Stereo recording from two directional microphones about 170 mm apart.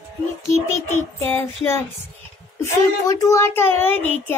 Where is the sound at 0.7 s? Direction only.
15° left (ahead or behind).